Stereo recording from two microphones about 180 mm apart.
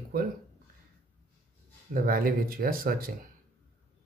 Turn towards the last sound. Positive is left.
turn(degrees=-55)  # may be behind; listen again after turning